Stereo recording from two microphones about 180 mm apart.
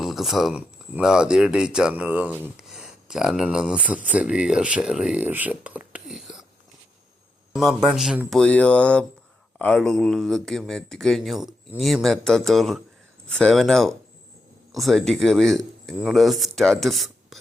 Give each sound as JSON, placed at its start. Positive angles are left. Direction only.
{"t": 0.0, "sound": "speech", "side_deg": 0}
{"t": 7.5, "sound": "speech", "side_deg": 0}